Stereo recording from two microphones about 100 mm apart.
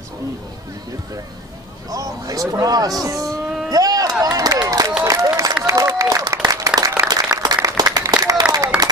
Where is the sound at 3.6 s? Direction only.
40° right (ahead or behind).